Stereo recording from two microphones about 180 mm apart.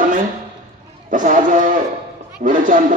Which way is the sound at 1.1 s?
45° right (ahead or behind).